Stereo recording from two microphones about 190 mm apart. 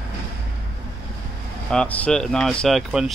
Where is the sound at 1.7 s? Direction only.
5° left (ahead or behind).